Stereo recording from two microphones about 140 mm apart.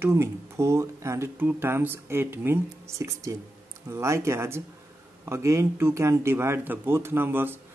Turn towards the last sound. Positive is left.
turn(degrees=-15)  # may be behind; listen again after turning